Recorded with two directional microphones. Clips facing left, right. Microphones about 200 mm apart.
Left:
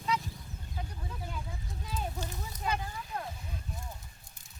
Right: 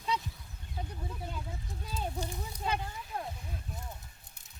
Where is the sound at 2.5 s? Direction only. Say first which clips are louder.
Even; 25° right (ahead or behind).